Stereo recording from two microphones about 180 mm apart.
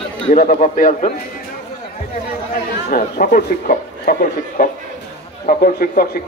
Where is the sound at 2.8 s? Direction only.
55° left (ahead or behind).